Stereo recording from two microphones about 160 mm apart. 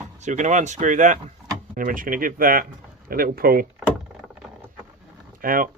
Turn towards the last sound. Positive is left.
turn(degrees=-60)  # may be behind; listen again after turning